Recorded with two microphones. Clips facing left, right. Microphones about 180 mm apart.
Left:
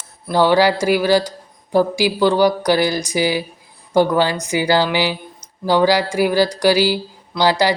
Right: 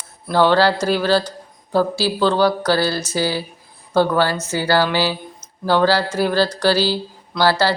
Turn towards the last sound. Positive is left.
turn(degrees=15)  # may be behind; listen again after turning